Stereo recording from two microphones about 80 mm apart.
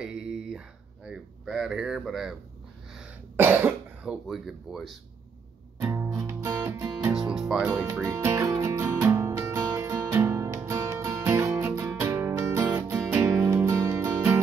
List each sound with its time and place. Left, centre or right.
0.0 s a sound: centre
2.0 s speech: centre
3.3 s cough: right
4.3 s speech: centre
5.8 s music: right
6.1 s music: right
7.2 s music: centre
8.0 s speech: right
8.5 s music: right
13.4 s music: centre
13.7 s music: right